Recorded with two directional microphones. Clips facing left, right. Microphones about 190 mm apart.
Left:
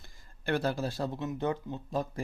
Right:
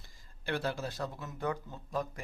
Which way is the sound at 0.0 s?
45° left (ahead or behind).